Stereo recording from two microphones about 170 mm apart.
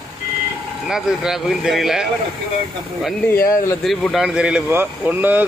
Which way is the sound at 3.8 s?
Centre (ahead or behind).